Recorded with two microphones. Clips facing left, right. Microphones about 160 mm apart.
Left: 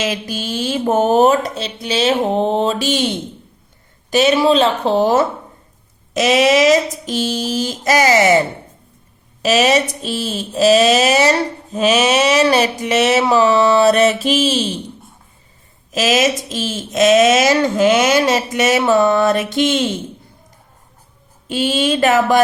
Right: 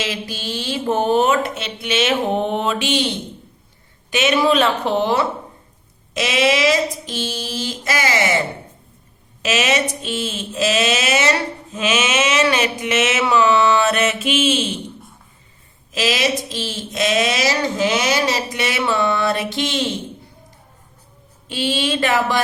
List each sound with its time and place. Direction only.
0.0 s speech: 45° left (ahead or behind)
4.1 s speech: 35° left (ahead or behind)
9.4 s speech: 35° left (ahead or behind)
15.9 s speech: 45° left (ahead or behind)
21.4 s speech: 45° left (ahead or behind)